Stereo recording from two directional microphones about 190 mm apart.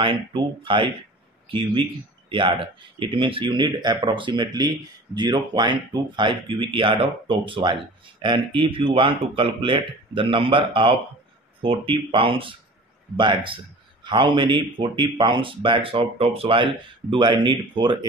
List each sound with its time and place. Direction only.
0.0 s speech: 25° right (ahead or behind)